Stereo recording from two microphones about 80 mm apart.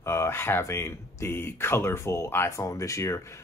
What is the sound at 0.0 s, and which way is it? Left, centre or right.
Speech, left.